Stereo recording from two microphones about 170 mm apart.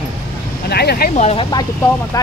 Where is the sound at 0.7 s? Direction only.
70° left (ahead or behind).